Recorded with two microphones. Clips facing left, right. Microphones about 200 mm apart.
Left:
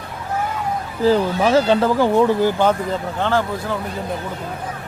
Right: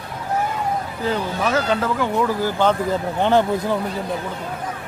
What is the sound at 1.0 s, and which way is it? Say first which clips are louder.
Speech: left 8 dB; 30° left (ahead or behind).